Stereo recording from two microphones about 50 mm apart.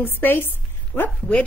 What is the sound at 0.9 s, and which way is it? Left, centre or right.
Speech, left.